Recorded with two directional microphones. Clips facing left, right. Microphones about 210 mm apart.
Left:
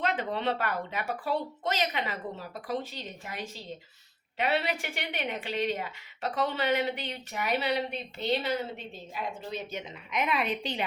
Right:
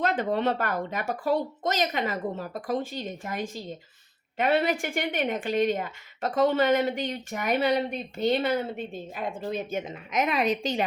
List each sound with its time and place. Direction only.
0.0 s a woman's voice: 45° right (ahead or behind)